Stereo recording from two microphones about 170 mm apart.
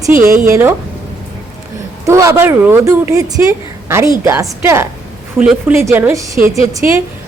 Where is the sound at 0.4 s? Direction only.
15° right (ahead or behind).